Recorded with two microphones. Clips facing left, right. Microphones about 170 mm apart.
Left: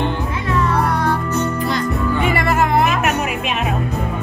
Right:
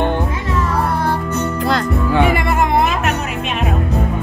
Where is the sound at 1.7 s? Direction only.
75° right (ahead or behind).